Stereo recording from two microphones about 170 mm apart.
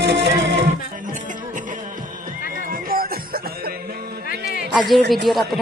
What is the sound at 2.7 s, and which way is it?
Music, 60° right (ahead or behind).